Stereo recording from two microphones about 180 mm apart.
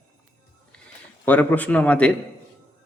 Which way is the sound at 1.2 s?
10° left (ahead or behind).